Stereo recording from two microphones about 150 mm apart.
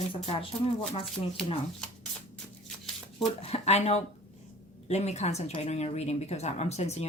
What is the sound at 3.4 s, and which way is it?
Speech, 45° left (ahead or behind).